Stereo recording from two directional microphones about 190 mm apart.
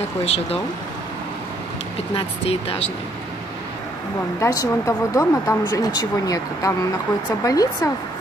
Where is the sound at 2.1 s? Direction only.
30° left (ahead or behind).